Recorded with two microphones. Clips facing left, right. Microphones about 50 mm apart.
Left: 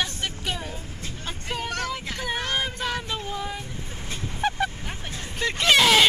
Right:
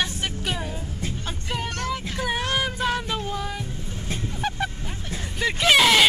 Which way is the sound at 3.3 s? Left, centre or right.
Centre.